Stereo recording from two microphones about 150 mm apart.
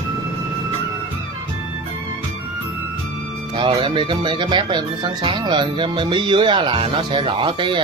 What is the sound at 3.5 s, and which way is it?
Speech, 30° right (ahead or behind).